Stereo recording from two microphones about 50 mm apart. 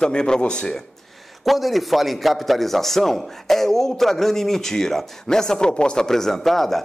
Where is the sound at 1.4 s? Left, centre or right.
Centre.